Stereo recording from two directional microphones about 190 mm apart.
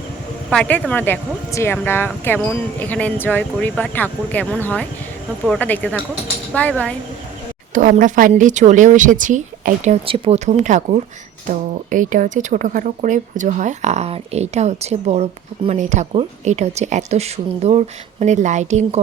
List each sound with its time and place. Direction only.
0.5 s speech: 5° left (ahead or behind)
7.7 s speech: 45° right (ahead or behind)